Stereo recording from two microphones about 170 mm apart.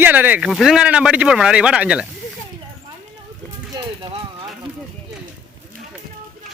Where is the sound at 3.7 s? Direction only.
25° right (ahead or behind).